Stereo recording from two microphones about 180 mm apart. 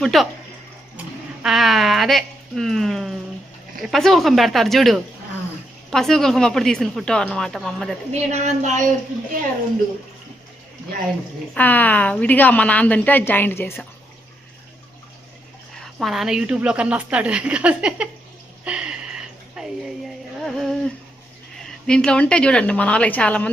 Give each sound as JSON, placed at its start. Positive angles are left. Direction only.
{"t": 0.0, "sound": "a woman's voice", "side_deg": 0}
{"t": 0.9, "sound": "a sound", "side_deg": -5}
{"t": 3.8, "sound": "a woman's voice", "side_deg": 0}
{"t": 8.1, "sound": "a woman's voice", "side_deg": -35}
{"t": 11.5, "sound": "a woman's voice", "side_deg": 10}
{"t": 15.8, "sound": "a woman's voice", "side_deg": 0}
{"t": 18.6, "sound": "a sound", "side_deg": -5}
{"t": 20.4, "sound": "humming", "side_deg": 0}
{"t": 21.8, "sound": "a woman's voice", "side_deg": 5}